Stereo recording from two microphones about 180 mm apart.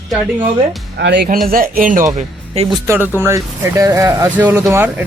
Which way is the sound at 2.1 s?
35° right (ahead or behind).